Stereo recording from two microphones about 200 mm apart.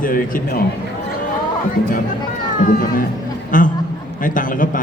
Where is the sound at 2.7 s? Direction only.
45° left (ahead or behind).